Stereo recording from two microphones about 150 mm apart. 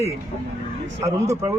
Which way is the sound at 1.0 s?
20° right (ahead or behind).